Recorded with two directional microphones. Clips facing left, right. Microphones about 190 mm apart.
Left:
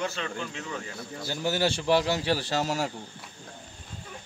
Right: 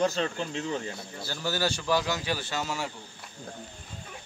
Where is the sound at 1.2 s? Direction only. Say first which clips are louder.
Left 3 dB; 20° left (ahead or behind); by 2.9 s 40° left (ahead or behind).